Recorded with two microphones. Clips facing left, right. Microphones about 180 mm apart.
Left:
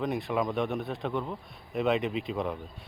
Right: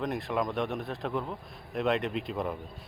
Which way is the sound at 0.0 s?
Centre (ahead or behind).